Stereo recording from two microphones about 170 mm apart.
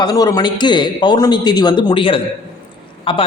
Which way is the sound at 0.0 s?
20° left (ahead or behind).